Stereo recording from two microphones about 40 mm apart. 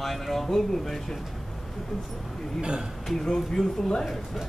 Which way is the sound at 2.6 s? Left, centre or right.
Right.